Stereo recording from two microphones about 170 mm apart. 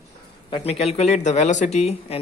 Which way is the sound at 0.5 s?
35° left (ahead or behind).